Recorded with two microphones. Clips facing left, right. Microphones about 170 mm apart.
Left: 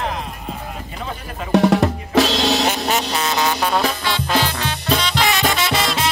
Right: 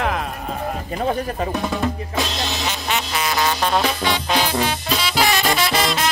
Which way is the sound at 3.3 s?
15° left (ahead or behind).